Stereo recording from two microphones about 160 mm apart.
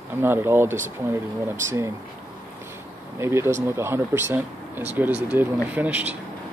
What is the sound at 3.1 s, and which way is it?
Speech, 15° right (ahead or behind).